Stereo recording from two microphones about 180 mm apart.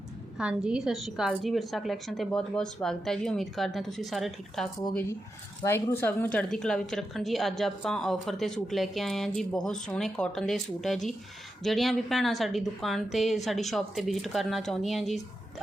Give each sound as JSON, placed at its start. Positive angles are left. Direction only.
{"t": 0.3, "sound": "a woman's voice", "side_deg": -5}
{"t": 5.6, "sound": "a woman's voice", "side_deg": 10}